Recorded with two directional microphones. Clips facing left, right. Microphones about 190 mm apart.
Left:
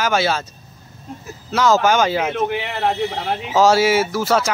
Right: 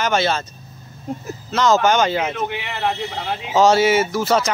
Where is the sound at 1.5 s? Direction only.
5° left (ahead or behind).